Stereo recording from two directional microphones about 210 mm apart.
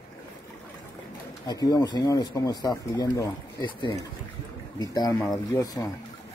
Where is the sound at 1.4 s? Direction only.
15° left (ahead or behind).